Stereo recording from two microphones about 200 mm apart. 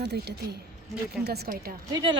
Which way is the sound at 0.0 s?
55° right (ahead or behind).